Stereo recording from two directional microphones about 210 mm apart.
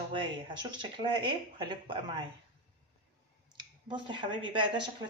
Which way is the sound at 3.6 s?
20° right (ahead or behind).